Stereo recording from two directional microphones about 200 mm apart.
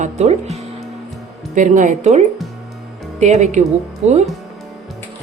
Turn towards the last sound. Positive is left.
turn(degrees=-35)  # may be behind; listen again after turning